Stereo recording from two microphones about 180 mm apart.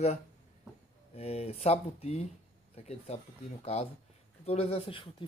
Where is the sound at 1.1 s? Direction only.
35° left (ahead or behind).